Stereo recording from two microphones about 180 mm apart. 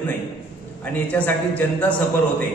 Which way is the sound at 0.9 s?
10° left (ahead or behind).